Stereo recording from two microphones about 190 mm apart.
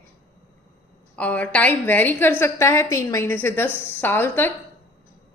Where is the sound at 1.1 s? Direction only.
5° left (ahead or behind).